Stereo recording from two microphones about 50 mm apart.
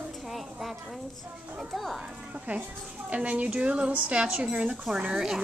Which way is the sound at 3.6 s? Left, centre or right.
Right.